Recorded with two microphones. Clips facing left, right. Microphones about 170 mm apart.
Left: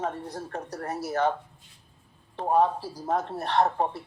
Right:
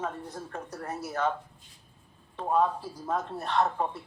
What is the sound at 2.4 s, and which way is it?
Speech, 35° left (ahead or behind).